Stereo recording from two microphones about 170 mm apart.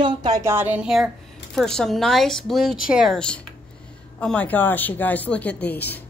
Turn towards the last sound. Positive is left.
turn(degrees=10)  # may be behind; listen again after turning